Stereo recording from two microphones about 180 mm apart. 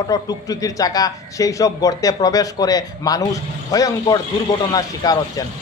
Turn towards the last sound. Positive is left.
turn(degrees=20)  # may be behind; listen again after turning